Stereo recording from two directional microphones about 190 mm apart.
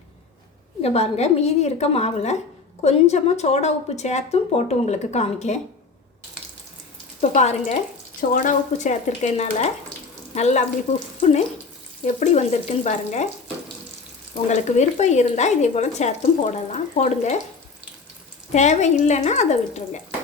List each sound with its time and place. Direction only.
0.8 s speech: 35° left (ahead or behind)
7.2 s speech: 35° left (ahead or behind)
14.5 s speech: 35° left (ahead or behind)
18.5 s speech: 35° left (ahead or behind)